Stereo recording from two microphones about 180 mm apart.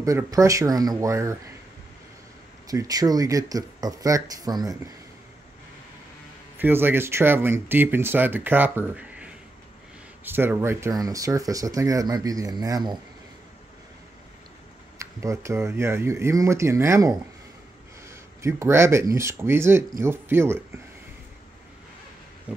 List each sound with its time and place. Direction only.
0.0 s speech: 15° right (ahead or behind)
2.7 s speech: 20° right (ahead or behind)
6.6 s speech: 10° right (ahead or behind)
15.0 s speech: 15° right (ahead or behind)